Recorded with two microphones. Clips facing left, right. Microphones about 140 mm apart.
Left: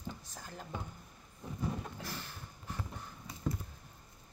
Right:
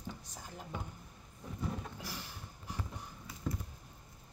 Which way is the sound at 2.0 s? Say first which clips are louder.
Left 1 dB; 10° right (ahead or behind).